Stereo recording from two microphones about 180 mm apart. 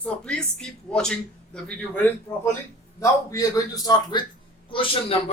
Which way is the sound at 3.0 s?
20° left (ahead or behind).